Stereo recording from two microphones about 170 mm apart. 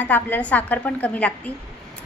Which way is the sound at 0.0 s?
10° left (ahead or behind).